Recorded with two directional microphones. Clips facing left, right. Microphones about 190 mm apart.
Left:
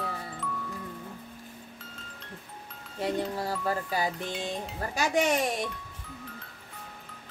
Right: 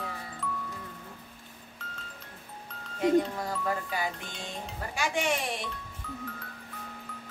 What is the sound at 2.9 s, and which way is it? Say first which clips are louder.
Speech: right 5 dB; 35° left (ahead or behind).